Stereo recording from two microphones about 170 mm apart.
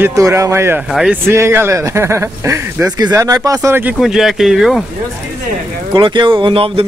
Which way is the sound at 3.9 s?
Centre (ahead or behind).